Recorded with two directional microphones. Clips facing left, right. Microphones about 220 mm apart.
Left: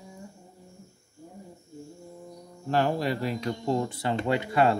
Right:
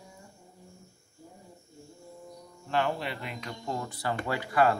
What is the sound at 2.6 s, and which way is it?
Speech, 40° left (ahead or behind).